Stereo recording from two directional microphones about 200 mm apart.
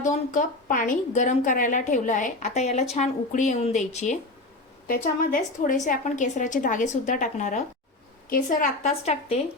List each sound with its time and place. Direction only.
0.0 s a woman's voice: 40° left (ahead or behind)
5.2 s a woman's voice: 40° left (ahead or behind)